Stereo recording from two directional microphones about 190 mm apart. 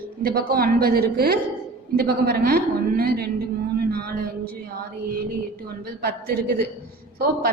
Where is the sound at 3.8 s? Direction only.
55° right (ahead or behind).